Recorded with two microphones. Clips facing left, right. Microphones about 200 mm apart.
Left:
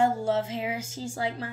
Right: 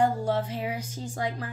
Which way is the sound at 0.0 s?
25° left (ahead or behind).